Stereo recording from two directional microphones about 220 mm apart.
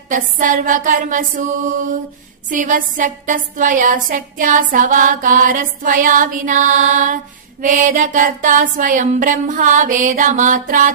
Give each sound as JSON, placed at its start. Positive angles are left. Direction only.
{"t": 0.1, "sound": "a woman's voice", "side_deg": -35}